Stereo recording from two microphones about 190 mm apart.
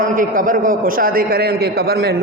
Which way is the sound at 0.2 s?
45° right (ahead or behind).